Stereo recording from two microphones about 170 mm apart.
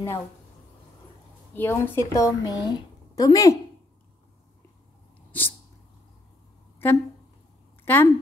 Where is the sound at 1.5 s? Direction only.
15° left (ahead or behind).